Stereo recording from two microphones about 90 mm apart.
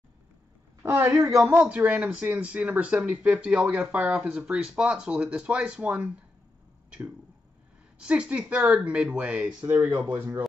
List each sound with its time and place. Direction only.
0.8 s a woman's voice: 30° right (ahead or behind)
1.7 s speech: 20° right (ahead or behind)
8.0 s speech: 10° right (ahead or behind)